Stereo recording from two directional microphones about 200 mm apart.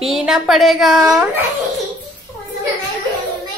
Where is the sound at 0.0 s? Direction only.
5° right (ahead or behind).